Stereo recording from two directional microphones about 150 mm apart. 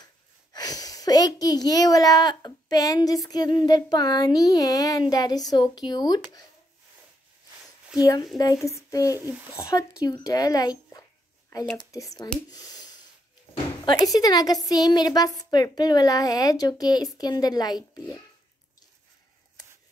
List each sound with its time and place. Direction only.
0.5 s a child's voice: 25° left (ahead or behind)
8.0 s a child's voice: 25° left (ahead or behind)
9.2 s speech: 10° right (ahead or behind)
9.6 s a child's voice: 20° left (ahead or behind)
12.4 s a sound: 25° left (ahead or behind)
13.8 s a child's voice: 25° left (ahead or behind)